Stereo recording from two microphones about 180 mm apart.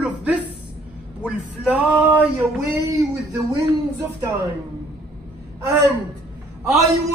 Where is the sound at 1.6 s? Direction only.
5° right (ahead or behind).